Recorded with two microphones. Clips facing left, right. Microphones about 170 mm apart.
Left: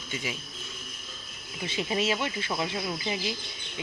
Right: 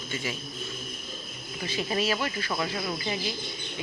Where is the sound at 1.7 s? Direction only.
20° left (ahead or behind).